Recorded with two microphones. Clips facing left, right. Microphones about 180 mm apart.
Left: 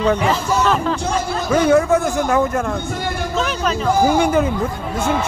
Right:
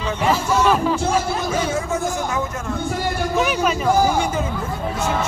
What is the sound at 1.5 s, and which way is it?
Speech, 60° left (ahead or behind).